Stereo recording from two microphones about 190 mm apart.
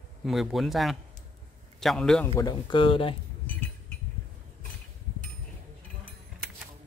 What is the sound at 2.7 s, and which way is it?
Speech, 30° left (ahead or behind).